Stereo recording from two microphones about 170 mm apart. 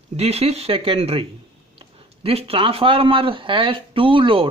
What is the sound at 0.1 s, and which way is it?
Speech, 35° right (ahead or behind).